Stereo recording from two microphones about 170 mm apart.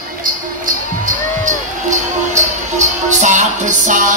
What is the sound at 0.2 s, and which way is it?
Music, 50° right (ahead or behind).